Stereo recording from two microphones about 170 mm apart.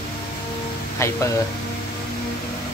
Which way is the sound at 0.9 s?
15° left (ahead or behind).